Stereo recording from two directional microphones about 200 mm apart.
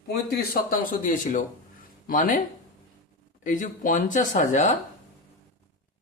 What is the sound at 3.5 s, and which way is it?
Speech, 40° left (ahead or behind).